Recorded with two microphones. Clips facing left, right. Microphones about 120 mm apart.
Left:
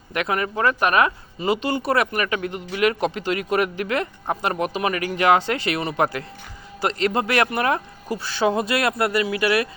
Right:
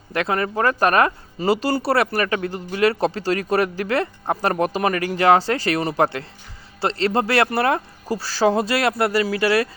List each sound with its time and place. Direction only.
0.1 s speech: 35° right (ahead or behind)